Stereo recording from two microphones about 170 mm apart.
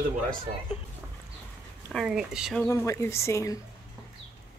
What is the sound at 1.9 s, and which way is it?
Speech, centre (ahead or behind).